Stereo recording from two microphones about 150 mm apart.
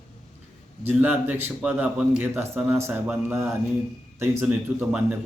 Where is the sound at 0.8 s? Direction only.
10° right (ahead or behind).